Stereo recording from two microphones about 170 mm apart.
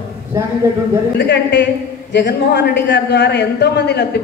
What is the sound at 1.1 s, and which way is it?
A woman's voice, 90° left.